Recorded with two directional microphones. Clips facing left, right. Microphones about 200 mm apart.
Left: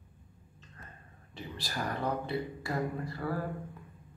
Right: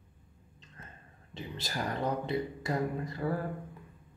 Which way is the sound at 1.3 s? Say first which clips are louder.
Right 2 dB; 20° right (ahead or behind).